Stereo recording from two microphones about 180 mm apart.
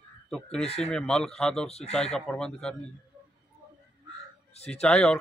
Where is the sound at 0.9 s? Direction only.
5° left (ahead or behind).